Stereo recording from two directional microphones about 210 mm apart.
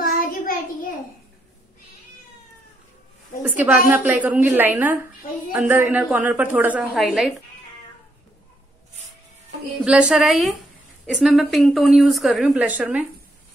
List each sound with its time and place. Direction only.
0.0 s a sound: 45° left (ahead or behind)
3.4 s a woman's voice: 5° right (ahead or behind)
9.8 s speech: 5° right (ahead or behind)